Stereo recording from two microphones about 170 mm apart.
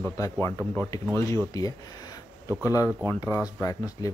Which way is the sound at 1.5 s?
20° left (ahead or behind).